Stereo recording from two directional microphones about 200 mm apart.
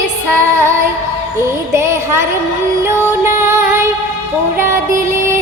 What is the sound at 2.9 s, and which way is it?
Music, 10° right (ahead or behind).